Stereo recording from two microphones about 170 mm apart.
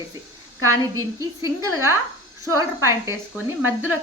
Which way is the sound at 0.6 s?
20° right (ahead or behind).